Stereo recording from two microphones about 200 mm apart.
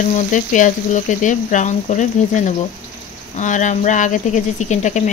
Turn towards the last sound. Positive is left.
turn(degrees=35)  # may be behind; listen again after turning